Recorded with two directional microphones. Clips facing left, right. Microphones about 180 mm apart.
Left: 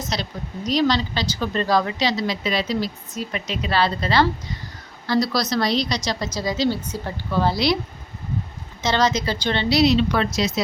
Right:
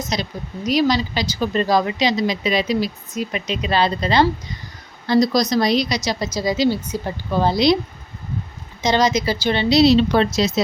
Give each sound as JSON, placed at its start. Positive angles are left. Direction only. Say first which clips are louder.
{"t": 0.1, "sound": "speech", "louder": "right 3 dB", "side_deg": -10}
{"t": 8.8, "sound": "speech", "louder": "right 3 dB", "side_deg": -15}
{"t": 9.8, "sound": "speech", "louder": "right 4 dB", "side_deg": -30}